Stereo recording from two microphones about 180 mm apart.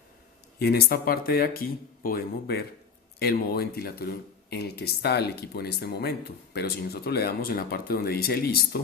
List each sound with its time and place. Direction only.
0.6 s speech: 60° left (ahead or behind)